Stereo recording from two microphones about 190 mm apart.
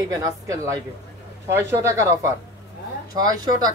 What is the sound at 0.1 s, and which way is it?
Speech, 20° right (ahead or behind).